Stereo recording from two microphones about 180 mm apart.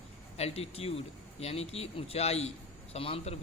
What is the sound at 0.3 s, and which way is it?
A man's voice, 35° left (ahead or behind).